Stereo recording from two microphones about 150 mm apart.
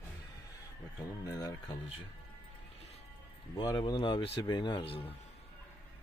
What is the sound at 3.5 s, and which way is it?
Speech, 30° left (ahead or behind).